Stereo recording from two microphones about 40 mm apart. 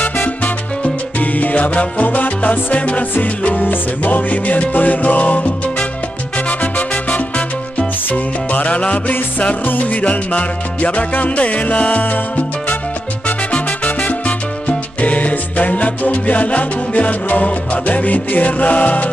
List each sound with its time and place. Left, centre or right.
0.0 s salsa music: left
1.2 s music: left
8.6 s music: left
13.5 s music: left